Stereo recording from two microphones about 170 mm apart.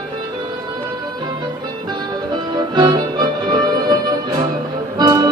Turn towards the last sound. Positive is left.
turn(degrees=-25)  # may be behind; listen again after turning